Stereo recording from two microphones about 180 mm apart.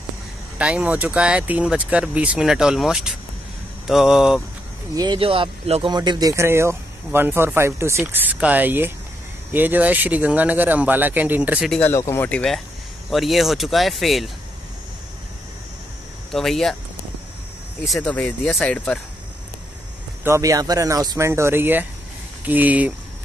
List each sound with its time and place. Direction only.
0.6 s speech: 5° right (ahead or behind)
4.9 s speech: 25° right (ahead or behind); by 11.7 s 10° right (ahead or behind)
11.7 s speech: 15° left (ahead or behind)
16.3 s speech: centre (ahead or behind)
17.8 s speech: 5° left (ahead or behind)
20.2 s speech: 15° right (ahead or behind)